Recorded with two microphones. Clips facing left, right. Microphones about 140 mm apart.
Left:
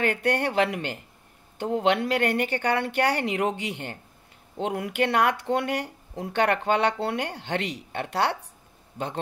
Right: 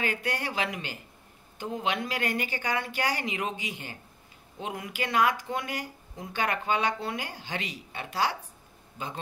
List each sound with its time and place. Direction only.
0.0 s a man's voice: 60° left (ahead or behind)